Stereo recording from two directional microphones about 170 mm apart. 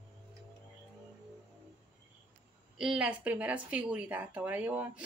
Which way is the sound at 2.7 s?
5° right (ahead or behind).